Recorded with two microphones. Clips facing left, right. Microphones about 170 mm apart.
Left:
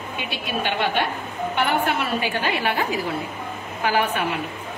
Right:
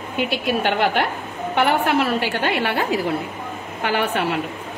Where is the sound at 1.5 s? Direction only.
75° right (ahead or behind).